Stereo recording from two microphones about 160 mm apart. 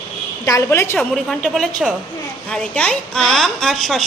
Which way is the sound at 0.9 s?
Centre (ahead or behind).